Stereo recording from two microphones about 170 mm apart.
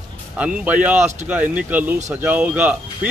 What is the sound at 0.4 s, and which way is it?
Speech, 10° right (ahead or behind).